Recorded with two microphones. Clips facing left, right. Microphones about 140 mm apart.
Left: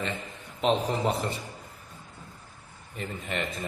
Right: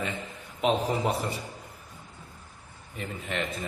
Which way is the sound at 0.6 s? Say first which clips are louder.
Even; 10° right (ahead or behind).